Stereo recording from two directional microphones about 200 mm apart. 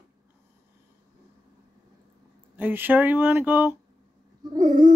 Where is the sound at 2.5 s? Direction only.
10° right (ahead or behind).